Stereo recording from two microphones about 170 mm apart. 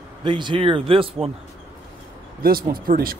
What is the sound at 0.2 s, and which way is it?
Speech, 30° right (ahead or behind).